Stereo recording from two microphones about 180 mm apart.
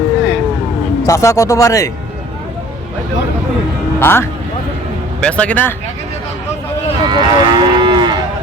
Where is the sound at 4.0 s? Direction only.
10° left (ahead or behind).